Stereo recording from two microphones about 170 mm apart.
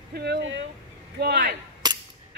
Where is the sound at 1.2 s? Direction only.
60° right (ahead or behind).